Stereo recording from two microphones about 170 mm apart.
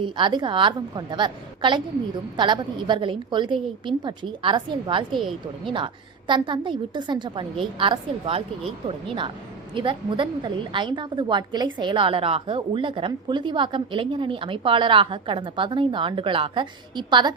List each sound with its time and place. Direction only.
0.0 s a woman's voice: 25° right (ahead or behind)
9.7 s a woman's voice: 30° right (ahead or behind)